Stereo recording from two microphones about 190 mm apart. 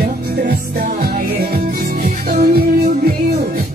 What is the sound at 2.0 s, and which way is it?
Music, 40° right (ahead or behind).